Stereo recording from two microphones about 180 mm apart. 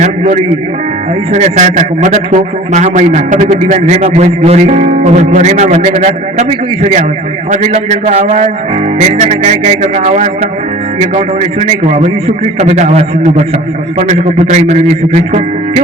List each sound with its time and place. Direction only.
1.3 s a man's voice: 40° right (ahead or behind)
7.5 s a man's voice: 40° right (ahead or behind)
11.6 s a man's voice: 40° right (ahead or behind)